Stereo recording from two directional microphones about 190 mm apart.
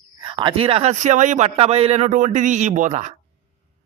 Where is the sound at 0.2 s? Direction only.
25° right (ahead or behind).